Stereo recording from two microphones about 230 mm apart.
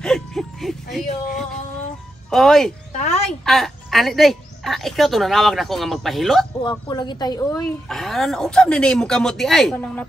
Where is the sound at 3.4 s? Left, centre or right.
Centre.